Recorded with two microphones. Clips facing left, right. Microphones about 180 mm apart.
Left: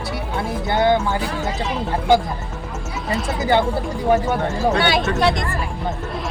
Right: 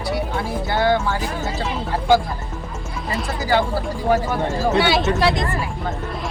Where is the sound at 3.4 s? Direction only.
20° left (ahead or behind).